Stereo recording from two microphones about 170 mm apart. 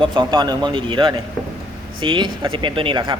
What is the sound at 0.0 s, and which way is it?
Speech, 25° right (ahead or behind).